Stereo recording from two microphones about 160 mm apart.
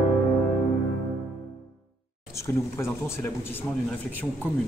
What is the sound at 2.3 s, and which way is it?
Speech, 15° left (ahead or behind).